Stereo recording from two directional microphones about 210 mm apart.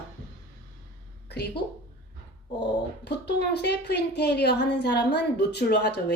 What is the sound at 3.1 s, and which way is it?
A woman's voice, 50° left (ahead or behind).